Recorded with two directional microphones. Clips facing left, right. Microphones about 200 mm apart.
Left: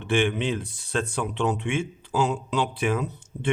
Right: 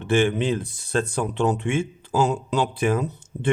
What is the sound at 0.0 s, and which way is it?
Speech, 45° right (ahead or behind).